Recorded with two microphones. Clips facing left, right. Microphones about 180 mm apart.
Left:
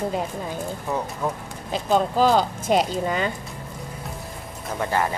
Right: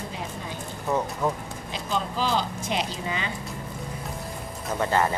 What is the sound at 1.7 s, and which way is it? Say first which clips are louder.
Speech: left 8 dB; 50° left (ahead or behind).